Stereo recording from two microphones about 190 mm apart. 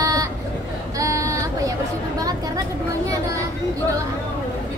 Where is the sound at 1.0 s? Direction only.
15° right (ahead or behind).